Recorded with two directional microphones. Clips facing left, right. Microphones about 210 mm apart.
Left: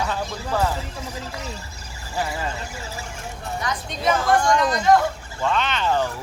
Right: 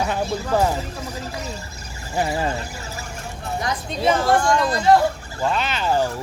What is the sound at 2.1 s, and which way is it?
Speech, 25° right (ahead or behind).